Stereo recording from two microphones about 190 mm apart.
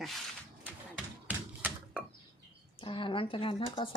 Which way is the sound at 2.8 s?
25° left (ahead or behind).